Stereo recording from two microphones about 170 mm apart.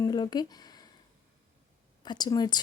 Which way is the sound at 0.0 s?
25° left (ahead or behind).